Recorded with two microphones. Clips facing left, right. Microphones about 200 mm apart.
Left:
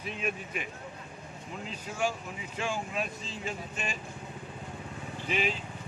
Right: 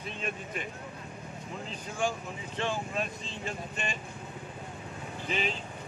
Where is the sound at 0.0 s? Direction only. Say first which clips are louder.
Left 2 dB; 5° left (ahead or behind).